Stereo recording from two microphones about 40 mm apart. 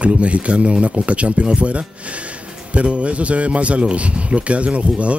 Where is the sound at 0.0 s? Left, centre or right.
Right.